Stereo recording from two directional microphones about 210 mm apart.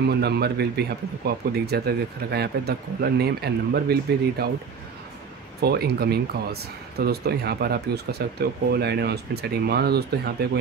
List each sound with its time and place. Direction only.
0.0 s speech: 50° right (ahead or behind)
5.6 s speech: 50° right (ahead or behind)